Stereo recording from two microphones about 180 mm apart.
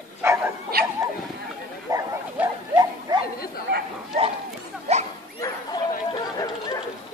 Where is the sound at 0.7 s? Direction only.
60° right (ahead or behind).